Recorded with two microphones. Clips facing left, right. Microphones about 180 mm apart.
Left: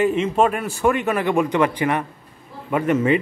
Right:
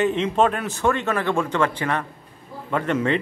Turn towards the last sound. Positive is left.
turn(degrees=10)  # may be behind; listen again after turning